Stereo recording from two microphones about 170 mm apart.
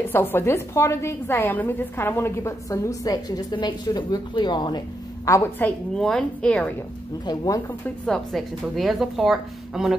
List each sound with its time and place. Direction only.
0.1 s a woman's voice: 15° left (ahead or behind)
5.9 s a woman's voice: 5° left (ahead or behind)
7.2 s speech: 20° left (ahead or behind)
7.8 s a woman's voice: 5° left (ahead or behind)